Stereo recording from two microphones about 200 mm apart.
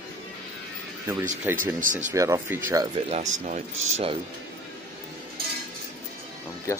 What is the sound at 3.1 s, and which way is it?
Speech, 35° right (ahead or behind).